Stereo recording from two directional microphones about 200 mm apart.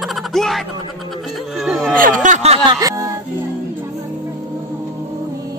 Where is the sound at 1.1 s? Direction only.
Centre (ahead or behind).